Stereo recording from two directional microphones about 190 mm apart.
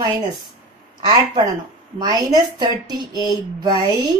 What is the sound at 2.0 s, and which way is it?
A woman's voice, 20° right (ahead or behind).